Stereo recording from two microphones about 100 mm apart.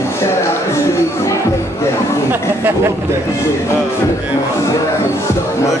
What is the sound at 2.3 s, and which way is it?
Speech, 20° right (ahead or behind).